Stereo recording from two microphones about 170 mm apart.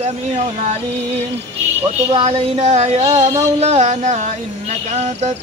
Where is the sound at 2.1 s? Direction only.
35° right (ahead or behind).